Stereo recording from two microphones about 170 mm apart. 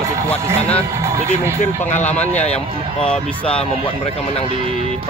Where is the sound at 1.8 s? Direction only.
40° left (ahead or behind).